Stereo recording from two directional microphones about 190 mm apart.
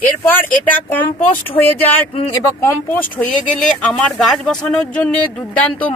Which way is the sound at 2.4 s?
10° left (ahead or behind).